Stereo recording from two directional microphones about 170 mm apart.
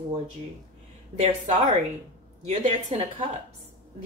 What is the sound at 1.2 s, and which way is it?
A woman's voice, 40° right (ahead or behind).